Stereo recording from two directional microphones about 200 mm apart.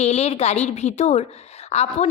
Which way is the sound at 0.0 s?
30° left (ahead or behind).